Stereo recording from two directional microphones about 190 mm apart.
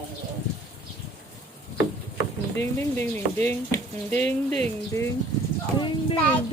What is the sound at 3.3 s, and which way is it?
Speech, 10° left (ahead or behind).